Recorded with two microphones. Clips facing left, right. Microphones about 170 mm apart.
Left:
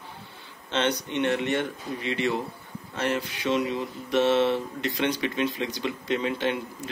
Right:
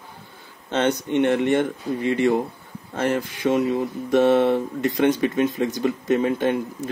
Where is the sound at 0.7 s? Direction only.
45° right (ahead or behind).